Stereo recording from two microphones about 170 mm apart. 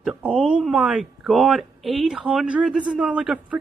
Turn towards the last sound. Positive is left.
turn(degrees=-5)  # may be behind; listen again after turning